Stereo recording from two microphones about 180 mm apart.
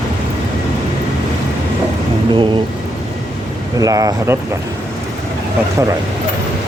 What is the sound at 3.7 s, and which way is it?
Speech, 20° right (ahead or behind).